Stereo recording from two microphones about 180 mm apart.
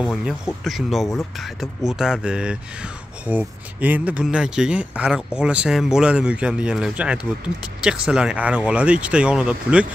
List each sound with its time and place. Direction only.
0.7 s speech: centre (ahead or behind)